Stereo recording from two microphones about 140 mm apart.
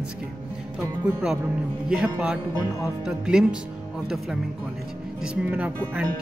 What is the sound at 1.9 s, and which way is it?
Speech, 5° right (ahead or behind).